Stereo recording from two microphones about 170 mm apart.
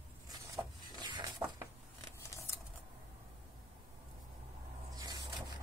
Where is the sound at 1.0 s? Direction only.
25° right (ahead or behind).